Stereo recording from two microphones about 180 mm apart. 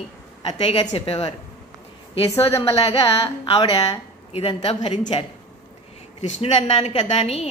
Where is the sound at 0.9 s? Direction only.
35° left (ahead or behind).